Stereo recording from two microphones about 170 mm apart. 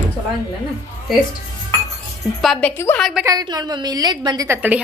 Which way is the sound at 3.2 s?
25° right (ahead or behind).